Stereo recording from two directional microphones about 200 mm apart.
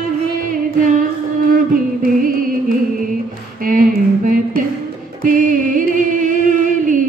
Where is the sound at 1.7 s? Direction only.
45° right (ahead or behind).